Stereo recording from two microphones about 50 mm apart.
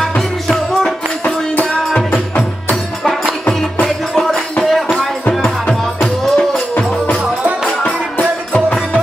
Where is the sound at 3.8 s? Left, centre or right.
Centre.